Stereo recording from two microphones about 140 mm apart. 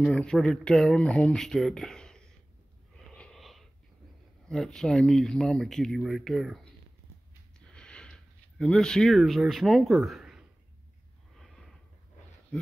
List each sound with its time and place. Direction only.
0.0 s speech: 5° left (ahead or behind)
3.1 s wheeze: 5° left (ahead or behind)
4.5 s speech: 5° left (ahead or behind)
7.6 s sniff: 5° left (ahead or behind)
11.3 s snort: centre (ahead or behind)